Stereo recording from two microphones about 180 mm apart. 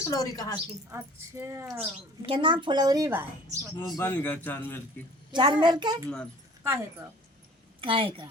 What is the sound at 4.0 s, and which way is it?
Speech, 10° left (ahead or behind).